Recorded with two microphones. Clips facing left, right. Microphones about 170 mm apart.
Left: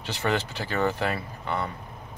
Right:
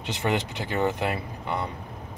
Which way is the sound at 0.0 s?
20° right (ahead or behind).